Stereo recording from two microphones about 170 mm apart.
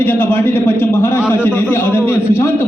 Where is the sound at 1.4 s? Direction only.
10° left (ahead or behind).